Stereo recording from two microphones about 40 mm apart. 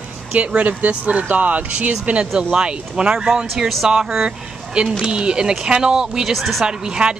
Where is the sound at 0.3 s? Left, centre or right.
Right.